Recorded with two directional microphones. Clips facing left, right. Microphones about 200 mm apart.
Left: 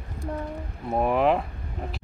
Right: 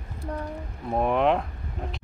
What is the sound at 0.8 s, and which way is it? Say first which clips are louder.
Speech: left 1 dB; 5° left (ahead or behind).